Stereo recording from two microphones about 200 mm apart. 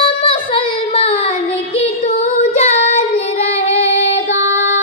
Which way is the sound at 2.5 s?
30° left (ahead or behind).